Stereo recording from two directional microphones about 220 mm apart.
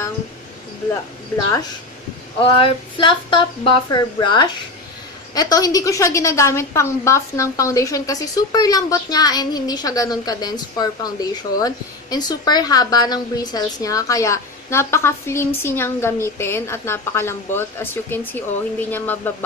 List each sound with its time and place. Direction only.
2.4 s a woman's voice: 25° left (ahead or behind)